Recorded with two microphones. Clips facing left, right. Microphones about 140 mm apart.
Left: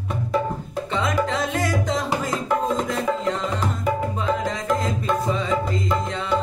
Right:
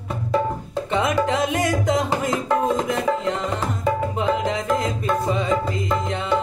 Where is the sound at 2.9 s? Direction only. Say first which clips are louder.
Right 1 dB; 20° right (ahead or behind).